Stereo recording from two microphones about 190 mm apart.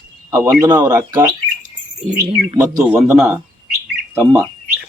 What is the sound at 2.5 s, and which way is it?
Speech, 15° right (ahead or behind).